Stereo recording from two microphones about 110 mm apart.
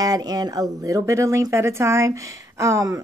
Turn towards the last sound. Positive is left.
turn(degrees=-30)  # may be behind; listen again after turning